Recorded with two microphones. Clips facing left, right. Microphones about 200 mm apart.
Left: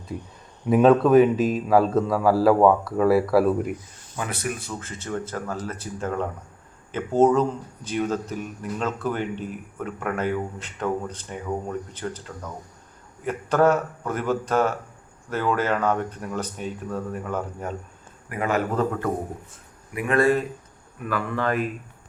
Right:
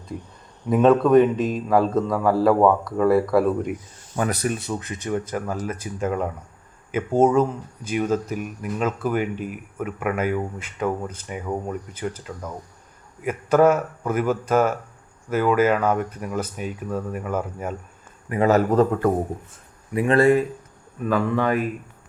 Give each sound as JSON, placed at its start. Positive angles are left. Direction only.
{"t": 0.7, "sound": "speech", "side_deg": 5}
{"t": 4.2, "sound": "a man's voice", "side_deg": -40}
{"t": 4.6, "sound": "speech", "side_deg": -20}
{"t": 18.4, "sound": "a man's voice", "side_deg": -40}
{"t": 19.9, "sound": "speech", "side_deg": -30}